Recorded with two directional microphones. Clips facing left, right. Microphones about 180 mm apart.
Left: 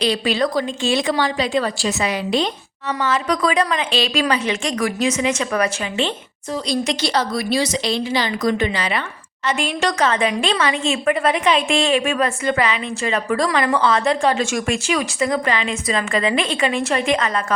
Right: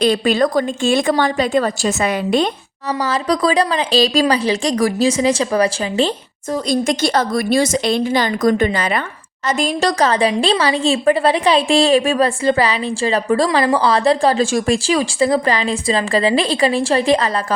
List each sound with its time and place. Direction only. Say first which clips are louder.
0.0 s a woman's voice: right 4 dB; 50° right (ahead or behind)
3.0 s a woman's voice: right 2 dB; 35° right (ahead or behind)
6.5 s a woman's voice: right 4 dB; 50° right (ahead or behind); by 17.4 s 35° right (ahead or behind)